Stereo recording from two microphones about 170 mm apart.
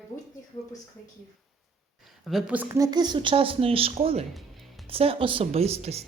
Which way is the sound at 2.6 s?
20° right (ahead or behind).